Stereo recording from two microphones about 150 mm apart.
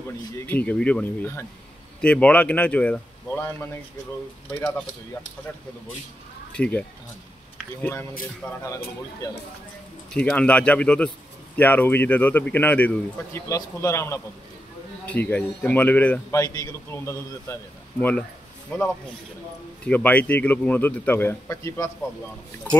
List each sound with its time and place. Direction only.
0.4 s speech: 10° left (ahead or behind)
6.5 s speech: 10° left (ahead or behind)
8.6 s a man's voice: 20° left (ahead or behind)
10.1 s speech: 10° left (ahead or behind)
16.3 s a man's voice: 20° left (ahead or behind)
19.9 s speech: 10° left (ahead or behind)